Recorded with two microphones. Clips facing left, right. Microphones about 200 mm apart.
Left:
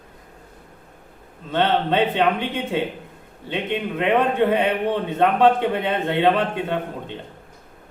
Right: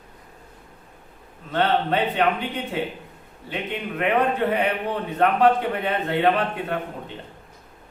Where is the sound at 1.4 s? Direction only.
25° left (ahead or behind).